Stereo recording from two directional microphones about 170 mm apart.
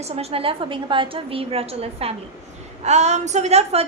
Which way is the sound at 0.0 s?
35° right (ahead or behind).